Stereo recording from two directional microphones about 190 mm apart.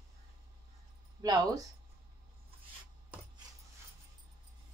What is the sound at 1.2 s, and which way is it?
Speech, 20° right (ahead or behind).